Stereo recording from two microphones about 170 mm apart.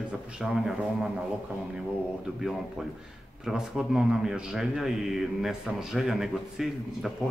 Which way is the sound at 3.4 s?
5° right (ahead or behind).